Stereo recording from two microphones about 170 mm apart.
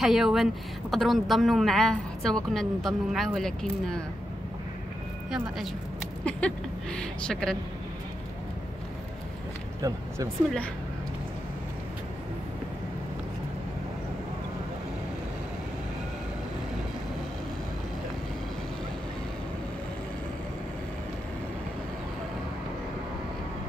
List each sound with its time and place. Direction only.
0.0 s a woman's voice: centre (ahead or behind)
6.2 s speech: 5° left (ahead or behind)
9.8 s speech: 20° right (ahead or behind)